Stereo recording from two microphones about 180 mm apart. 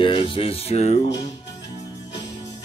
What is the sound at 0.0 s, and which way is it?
Speech, 30° left (ahead or behind).